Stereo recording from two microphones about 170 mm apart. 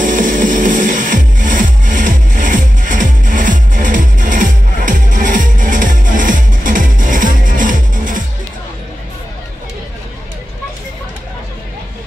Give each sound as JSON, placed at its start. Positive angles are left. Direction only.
{"t": 0.0, "sound": "music", "side_deg": -50}